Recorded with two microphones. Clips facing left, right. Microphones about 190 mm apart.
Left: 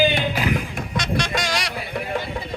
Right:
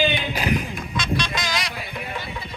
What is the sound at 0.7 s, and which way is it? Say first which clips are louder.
Music: left 1 dB; 70° left (ahead or behind).